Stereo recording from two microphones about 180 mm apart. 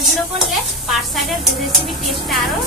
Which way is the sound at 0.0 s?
Centre (ahead or behind).